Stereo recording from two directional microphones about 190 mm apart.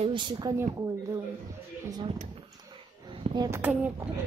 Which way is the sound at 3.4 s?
10° right (ahead or behind).